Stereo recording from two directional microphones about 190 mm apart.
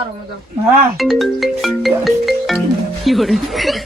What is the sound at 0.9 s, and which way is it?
Speech, centre (ahead or behind).